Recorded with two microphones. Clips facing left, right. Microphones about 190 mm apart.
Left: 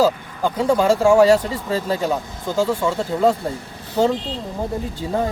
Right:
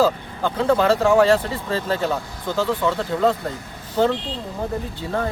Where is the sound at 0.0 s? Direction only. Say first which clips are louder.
Left 1 dB; 10° left (ahead or behind).